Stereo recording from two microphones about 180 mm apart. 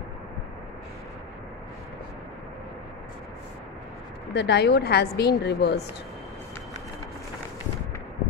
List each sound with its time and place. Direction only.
4.3 s a woman's voice: 70° left (ahead or behind)